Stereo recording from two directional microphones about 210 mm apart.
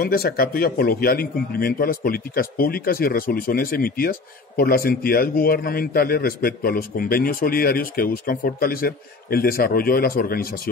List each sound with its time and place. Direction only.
0.0 s a man's voice: 45° left (ahead or behind)